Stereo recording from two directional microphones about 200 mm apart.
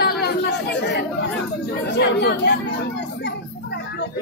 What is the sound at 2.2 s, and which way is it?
Speech, 60° left (ahead or behind).